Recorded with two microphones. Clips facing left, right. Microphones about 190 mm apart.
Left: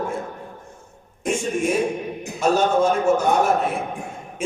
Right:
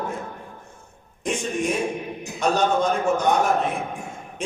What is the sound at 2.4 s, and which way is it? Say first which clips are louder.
Speech: left 3 dB; 5° left (ahead or behind).